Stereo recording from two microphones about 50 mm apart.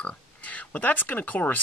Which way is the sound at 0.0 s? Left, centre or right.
Left.